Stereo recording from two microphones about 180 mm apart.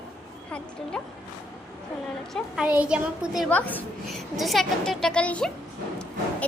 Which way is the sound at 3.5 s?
10° left (ahead or behind).